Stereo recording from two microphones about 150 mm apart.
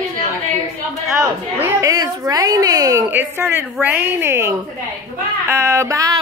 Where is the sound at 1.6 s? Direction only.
25° right (ahead or behind).